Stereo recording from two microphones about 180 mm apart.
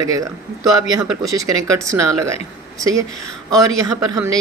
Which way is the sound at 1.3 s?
20° right (ahead or behind).